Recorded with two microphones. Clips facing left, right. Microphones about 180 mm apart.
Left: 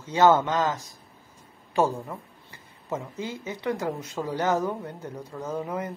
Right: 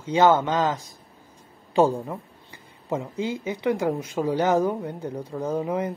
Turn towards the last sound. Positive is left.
turn(degrees=-15)  # may be behind; listen again after turning